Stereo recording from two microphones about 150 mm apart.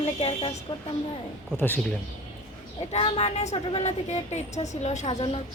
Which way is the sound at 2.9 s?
40° left (ahead or behind).